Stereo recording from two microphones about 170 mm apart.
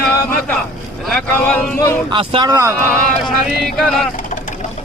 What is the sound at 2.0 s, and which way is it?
Speech, 30° right (ahead or behind).